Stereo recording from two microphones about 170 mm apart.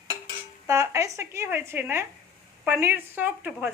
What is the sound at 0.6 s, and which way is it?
A woman's voice, 15° right (ahead or behind).